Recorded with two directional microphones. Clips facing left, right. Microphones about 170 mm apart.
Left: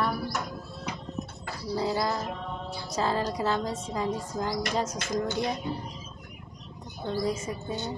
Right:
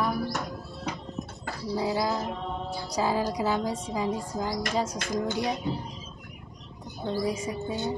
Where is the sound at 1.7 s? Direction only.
5° right (ahead or behind).